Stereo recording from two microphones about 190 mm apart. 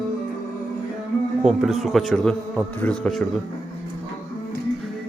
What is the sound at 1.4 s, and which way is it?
Speech, 5° right (ahead or behind).